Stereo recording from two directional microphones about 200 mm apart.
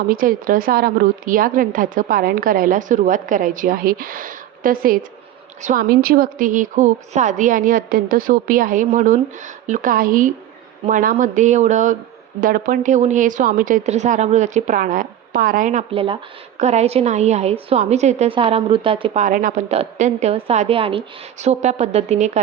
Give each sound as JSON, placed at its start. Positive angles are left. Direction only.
{"t": 0.1, "sound": "a woman's voice", "side_deg": -45}